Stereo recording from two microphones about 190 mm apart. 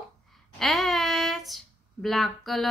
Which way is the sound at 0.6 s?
Centre (ahead or behind).